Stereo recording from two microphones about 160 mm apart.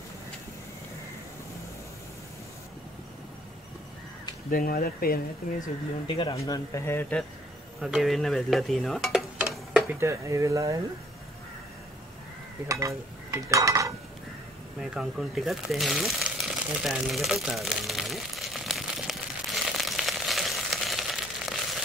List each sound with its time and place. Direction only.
4.5 s speech: 60° left (ahead or behind)
6.0 s a man's voice: 30° left (ahead or behind)
6.3 s speech: 20° left (ahead or behind)
7.8 s speech: centre (ahead or behind)
9.4 s tick-tock: centre (ahead or behind)
9.9 s speech: 20° right (ahead or behind)
12.6 s cutlery: 20° right (ahead or behind)
14.8 s speech: centre (ahead or behind)
16.8 s a sound: centre (ahead or behind)